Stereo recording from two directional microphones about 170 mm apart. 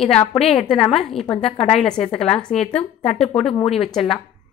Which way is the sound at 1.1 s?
35° left (ahead or behind).